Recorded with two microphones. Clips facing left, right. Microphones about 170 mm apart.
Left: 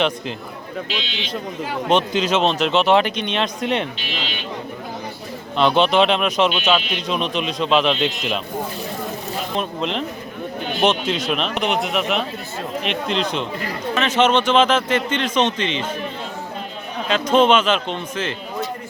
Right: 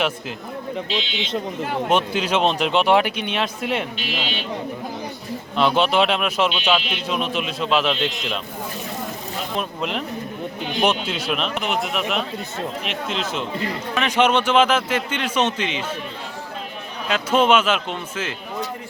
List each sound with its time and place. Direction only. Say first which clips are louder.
0.9 s speech: right 2 dB; 25° right (ahead or behind)
1.9 s a man's voice: left 3 dB; 10° right (ahead or behind)
5.5 s speech: left 2 dB; 5° right (ahead or behind)
9.6 s a man's voice: left 2 dB; 10° right (ahead or behind)
17.1 s a man's voice: left 2 dB; 5° right (ahead or behind)